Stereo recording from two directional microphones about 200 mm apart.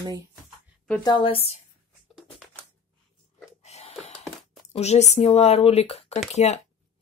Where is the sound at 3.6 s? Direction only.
35° left (ahead or behind).